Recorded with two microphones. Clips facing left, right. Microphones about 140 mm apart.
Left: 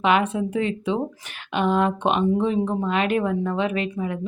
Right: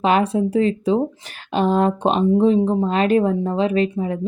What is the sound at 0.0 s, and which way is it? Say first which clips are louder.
Speech: right 3 dB; 35° right (ahead or behind).